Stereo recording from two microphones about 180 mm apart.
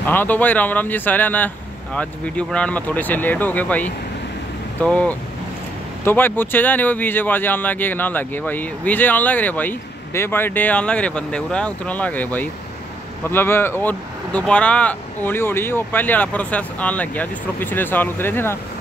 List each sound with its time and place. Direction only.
0.0 s speech: 10° left (ahead or behind)